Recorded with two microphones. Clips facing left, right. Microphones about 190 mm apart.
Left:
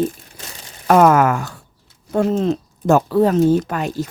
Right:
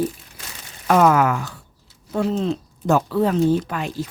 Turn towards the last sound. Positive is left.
turn(degrees=45)  # may be behind; listen again after turning